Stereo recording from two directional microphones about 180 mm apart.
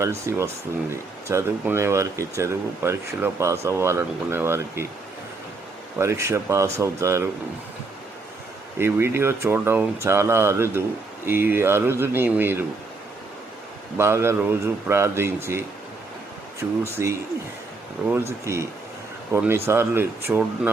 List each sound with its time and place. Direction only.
0.0 s speech: 15° right (ahead or behind)
6.0 s speech: 15° right (ahead or behind)
8.8 s speech: 15° right (ahead or behind)
14.0 s speech: 15° right (ahead or behind)
17.0 s speech: 15° right (ahead or behind)